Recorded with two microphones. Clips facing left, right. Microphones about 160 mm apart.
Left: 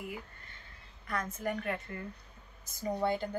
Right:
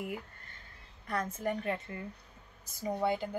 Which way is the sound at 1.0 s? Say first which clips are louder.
Right 2 dB; 30° right (ahead or behind).